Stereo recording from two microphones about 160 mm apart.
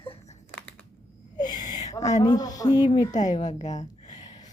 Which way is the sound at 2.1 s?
25° left (ahead or behind).